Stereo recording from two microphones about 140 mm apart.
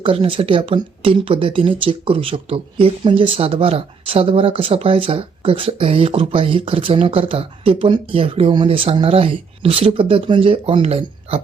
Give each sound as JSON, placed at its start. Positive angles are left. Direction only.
{"t": 0.0, "sound": "speech", "side_deg": -40}